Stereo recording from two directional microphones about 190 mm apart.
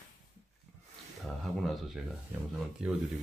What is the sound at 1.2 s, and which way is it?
Speech, centre (ahead or behind).